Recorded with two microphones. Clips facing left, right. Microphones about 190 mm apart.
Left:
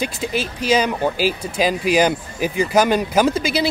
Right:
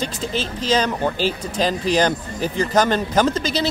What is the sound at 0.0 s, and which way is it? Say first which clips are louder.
Speech: left 2 dB; 10° left (ahead or behind).